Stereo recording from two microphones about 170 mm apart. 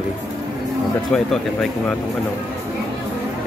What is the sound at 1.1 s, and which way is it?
Speech, 5° left (ahead or behind).